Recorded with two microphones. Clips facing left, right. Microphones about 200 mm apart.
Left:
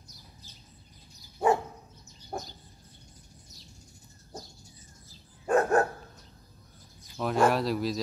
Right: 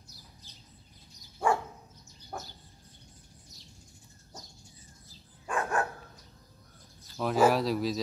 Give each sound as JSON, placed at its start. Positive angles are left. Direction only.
{"t": 1.4, "sound": "dog", "side_deg": 20}
{"t": 5.5, "sound": "dog", "side_deg": 40}
{"t": 7.2, "sound": "speech", "side_deg": 0}